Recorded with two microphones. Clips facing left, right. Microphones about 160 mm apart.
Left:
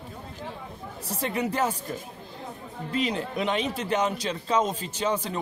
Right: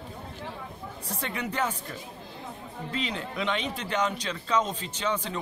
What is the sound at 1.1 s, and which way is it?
Speech, 35° left (ahead or behind).